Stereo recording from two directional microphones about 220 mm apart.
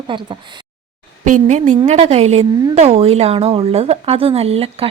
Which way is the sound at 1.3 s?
35° right (ahead or behind).